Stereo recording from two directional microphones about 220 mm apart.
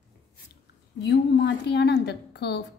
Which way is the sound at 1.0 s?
50° left (ahead or behind).